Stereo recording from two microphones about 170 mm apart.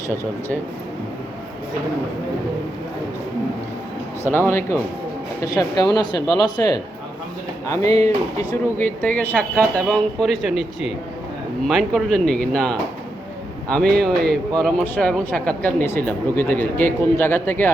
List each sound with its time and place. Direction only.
4.3 s speech: 15° left (ahead or behind)